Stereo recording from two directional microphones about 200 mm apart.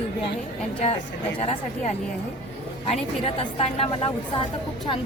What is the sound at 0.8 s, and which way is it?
Speech, 35° left (ahead or behind).